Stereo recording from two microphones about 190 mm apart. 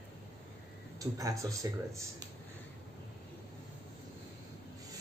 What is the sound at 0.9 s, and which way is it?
Speech, 15° right (ahead or behind).